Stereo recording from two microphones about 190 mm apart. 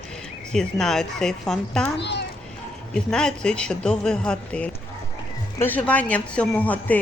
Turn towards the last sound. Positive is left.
turn(degrees=10)  # may be behind; listen again after turning